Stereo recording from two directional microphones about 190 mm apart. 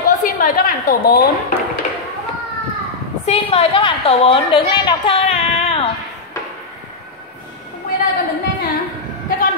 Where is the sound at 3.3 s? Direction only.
30° left (ahead or behind).